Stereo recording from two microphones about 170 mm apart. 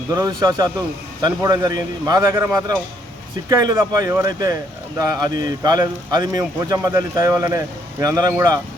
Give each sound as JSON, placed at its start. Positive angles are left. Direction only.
{"t": 0.1, "sound": "a man's voice", "side_deg": -20}